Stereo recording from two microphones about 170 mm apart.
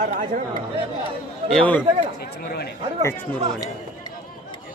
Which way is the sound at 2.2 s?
70° left (ahead or behind).